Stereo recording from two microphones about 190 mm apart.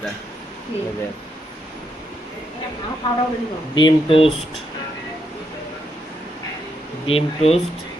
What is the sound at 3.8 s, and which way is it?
Speech, 25° left (ahead or behind).